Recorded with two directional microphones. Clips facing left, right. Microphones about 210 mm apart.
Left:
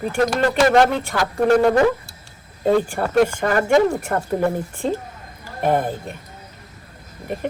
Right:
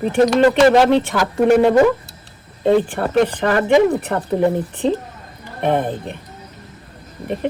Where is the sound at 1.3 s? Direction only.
5° right (ahead or behind).